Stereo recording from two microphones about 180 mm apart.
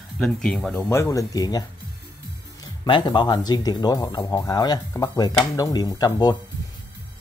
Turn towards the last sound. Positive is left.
turn(degrees=20)  # may be behind; listen again after turning